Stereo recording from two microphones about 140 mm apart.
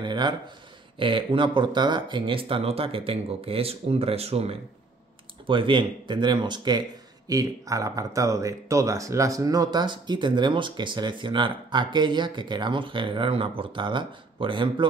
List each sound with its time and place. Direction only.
0.0 s speech: 30° right (ahead or behind)